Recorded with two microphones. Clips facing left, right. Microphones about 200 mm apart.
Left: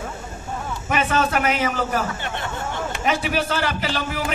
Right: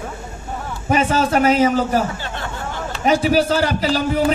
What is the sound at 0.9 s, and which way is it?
A man's voice, 30° right (ahead or behind).